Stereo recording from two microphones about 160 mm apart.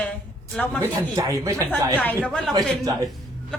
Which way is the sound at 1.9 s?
10° left (ahead or behind).